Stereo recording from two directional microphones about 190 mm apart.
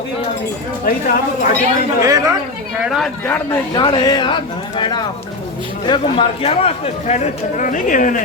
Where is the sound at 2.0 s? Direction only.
15° right (ahead or behind).